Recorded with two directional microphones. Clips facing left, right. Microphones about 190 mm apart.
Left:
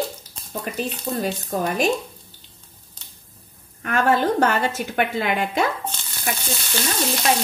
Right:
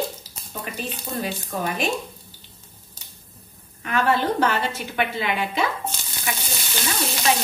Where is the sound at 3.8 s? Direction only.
45° left (ahead or behind).